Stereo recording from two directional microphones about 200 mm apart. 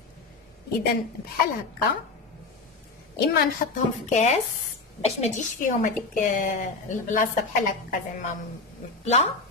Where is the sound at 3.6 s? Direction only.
45° left (ahead or behind).